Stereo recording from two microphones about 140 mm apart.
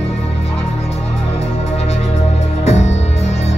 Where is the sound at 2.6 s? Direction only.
50° left (ahead or behind).